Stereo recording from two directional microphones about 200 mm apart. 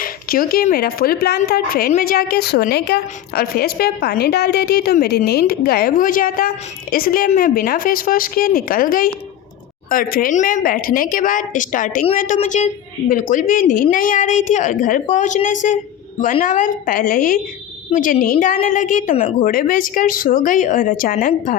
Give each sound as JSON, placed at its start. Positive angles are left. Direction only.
{"t": 0.0, "sound": "a woman's voice", "side_deg": 45}